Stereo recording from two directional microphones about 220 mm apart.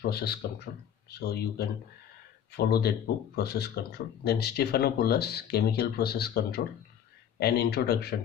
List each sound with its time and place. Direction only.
0.0 s speech: 45° left (ahead or behind)